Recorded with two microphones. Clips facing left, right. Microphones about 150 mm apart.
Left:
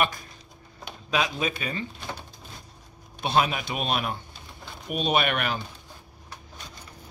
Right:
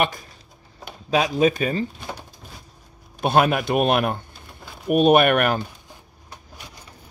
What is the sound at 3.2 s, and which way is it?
A man's voice, 50° right (ahead or behind).